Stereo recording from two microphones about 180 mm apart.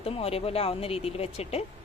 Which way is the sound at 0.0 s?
35° left (ahead or behind).